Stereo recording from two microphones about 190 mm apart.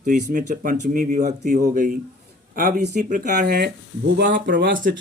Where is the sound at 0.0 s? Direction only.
45° right (ahead or behind).